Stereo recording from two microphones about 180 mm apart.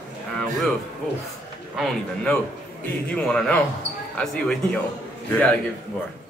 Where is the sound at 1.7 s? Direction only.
Centre (ahead or behind).